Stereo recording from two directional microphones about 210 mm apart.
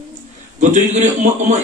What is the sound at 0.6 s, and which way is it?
Speech, 35° right (ahead or behind).